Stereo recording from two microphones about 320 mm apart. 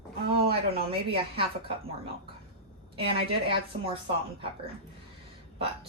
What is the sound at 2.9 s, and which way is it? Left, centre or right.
Speech, centre.